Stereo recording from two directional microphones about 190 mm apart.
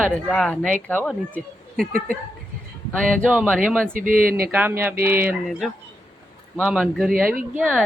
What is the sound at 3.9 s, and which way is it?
Speech, 45° right (ahead or behind).